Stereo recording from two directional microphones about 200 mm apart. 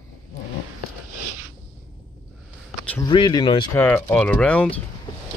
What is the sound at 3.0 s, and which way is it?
Speech, 20° left (ahead or behind).